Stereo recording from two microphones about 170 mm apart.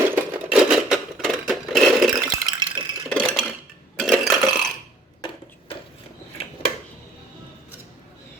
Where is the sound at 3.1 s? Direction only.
5° left (ahead or behind).